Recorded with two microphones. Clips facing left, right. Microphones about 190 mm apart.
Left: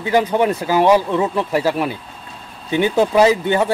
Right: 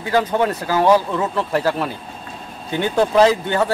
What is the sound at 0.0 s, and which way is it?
Speech, 15° left (ahead or behind).